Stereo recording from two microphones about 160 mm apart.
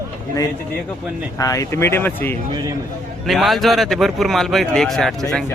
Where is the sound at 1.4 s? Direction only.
20° left (ahead or behind).